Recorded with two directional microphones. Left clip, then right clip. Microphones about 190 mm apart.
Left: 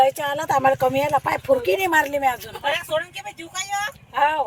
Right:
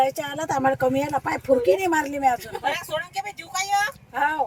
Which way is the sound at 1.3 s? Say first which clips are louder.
Even; 50° right (ahead or behind).